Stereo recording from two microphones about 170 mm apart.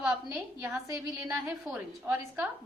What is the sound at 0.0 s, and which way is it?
A woman's voice, 5° right (ahead or behind).